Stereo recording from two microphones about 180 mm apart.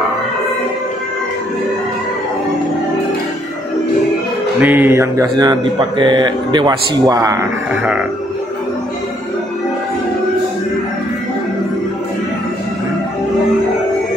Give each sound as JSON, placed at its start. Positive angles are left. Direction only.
{"t": 4.6, "sound": "speech", "side_deg": -10}